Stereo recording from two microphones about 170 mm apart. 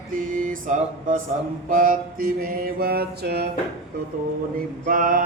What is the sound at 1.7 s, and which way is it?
Mantra, 55° right (ahead or behind).